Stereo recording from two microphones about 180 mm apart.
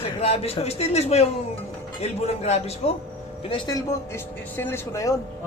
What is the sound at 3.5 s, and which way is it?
Snicker, 25° left (ahead or behind).